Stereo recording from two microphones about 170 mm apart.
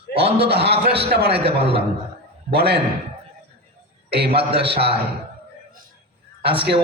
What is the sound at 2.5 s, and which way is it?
Speech, 75° right (ahead or behind).